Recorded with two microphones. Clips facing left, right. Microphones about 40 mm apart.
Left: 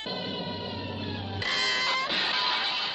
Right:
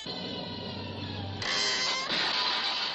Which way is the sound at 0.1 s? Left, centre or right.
Centre.